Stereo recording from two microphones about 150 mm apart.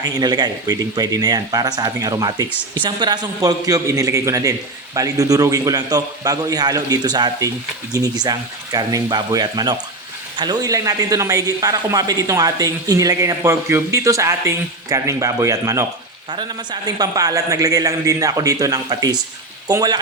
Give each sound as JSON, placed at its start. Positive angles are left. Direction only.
{"t": 0.0, "sound": "a man's voice", "side_deg": -25}